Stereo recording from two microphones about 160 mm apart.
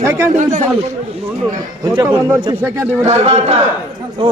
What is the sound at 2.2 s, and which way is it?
Speech, 15° right (ahead or behind).